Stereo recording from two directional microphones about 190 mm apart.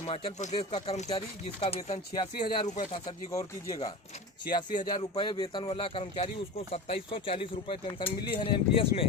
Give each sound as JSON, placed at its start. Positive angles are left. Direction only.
{"t": 0.1, "sound": "a man's voice", "side_deg": 30}
{"t": 2.6, "sound": "a man's voice", "side_deg": 40}